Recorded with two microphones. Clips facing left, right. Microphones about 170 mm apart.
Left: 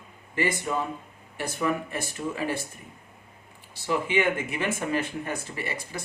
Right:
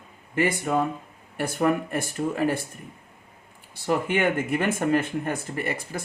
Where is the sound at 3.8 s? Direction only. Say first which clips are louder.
Right 2 dB; 50° right (ahead or behind).